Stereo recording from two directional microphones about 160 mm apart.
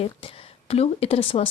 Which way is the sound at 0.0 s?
35° left (ahead or behind).